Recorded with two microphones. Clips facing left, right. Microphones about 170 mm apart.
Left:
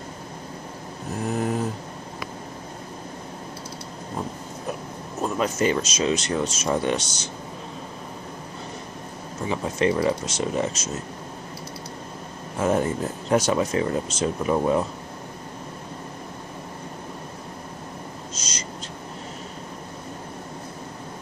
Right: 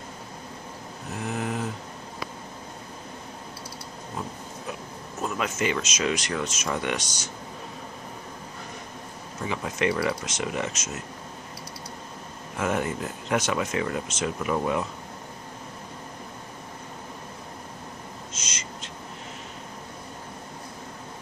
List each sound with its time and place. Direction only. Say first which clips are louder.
1.2 s a sound: left 5 dB; 40° left (ahead or behind)
5.2 s speech: left 5 dB; 35° left (ahead or behind)
9.5 s speech: left 4 dB; 30° left (ahead or behind)
12.5 s speech: left 5 dB; 35° left (ahead or behind)
18.3 s owl: left 4 dB; 35° left (ahead or behind)